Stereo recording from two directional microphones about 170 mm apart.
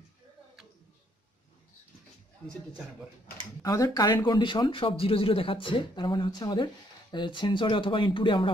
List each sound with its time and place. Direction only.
2.4 s speech: 10° left (ahead or behind)
3.6 s speech: 20° left (ahead or behind)